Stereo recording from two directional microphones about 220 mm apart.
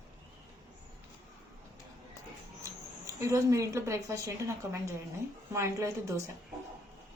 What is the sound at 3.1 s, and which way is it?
A woman's voice, 15° right (ahead or behind).